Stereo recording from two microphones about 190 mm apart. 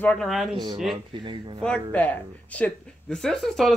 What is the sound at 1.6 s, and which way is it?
Speech, 5° left (ahead or behind).